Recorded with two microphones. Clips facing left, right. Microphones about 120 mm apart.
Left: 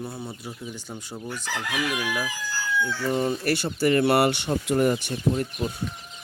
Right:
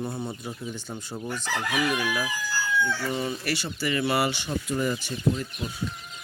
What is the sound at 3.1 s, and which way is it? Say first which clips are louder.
Speech: left 5 dB; 45° left (ahead or behind).